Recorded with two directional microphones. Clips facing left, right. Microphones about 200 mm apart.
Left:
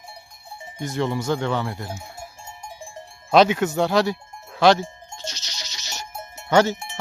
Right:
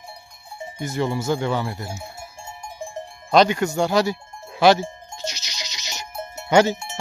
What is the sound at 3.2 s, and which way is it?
Cowbell, 5° left (ahead or behind).